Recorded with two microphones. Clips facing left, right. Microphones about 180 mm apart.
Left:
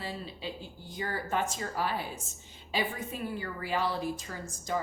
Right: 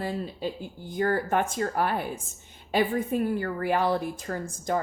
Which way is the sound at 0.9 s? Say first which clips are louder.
Right 8 dB; 55° right (ahead or behind).